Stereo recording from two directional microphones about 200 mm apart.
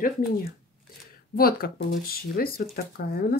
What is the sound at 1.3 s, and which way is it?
Speech, 45° left (ahead or behind).